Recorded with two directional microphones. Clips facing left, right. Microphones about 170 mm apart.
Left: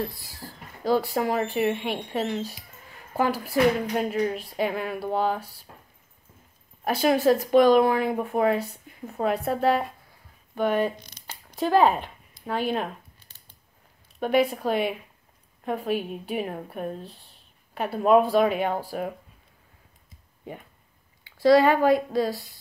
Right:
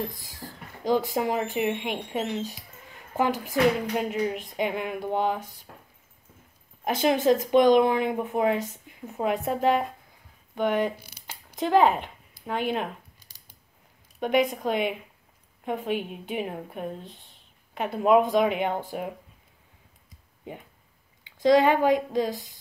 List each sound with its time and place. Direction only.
0.0 s speech: 15° right (ahead or behind)
6.8 s a woman's voice: 20° right (ahead or behind)
8.7 s a sound: 10° left (ahead or behind)
9.2 s speech: 15° right (ahead or behind)
14.2 s speech: 15° right (ahead or behind)
21.2 s speech: 20° right (ahead or behind)